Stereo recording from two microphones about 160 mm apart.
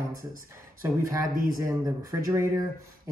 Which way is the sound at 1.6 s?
20° right (ahead or behind).